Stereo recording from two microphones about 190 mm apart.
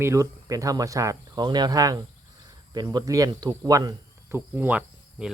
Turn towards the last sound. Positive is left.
turn(degrees=-5)  # may be behind; listen again after turning